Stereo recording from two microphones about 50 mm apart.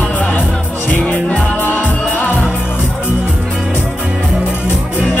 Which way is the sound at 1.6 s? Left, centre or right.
Left.